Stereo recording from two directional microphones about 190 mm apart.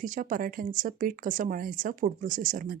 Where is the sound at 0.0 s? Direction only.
45° right (ahead or behind).